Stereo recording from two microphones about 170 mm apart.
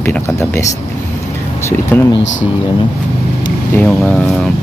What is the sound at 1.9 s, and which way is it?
Speech, 10° left (ahead or behind).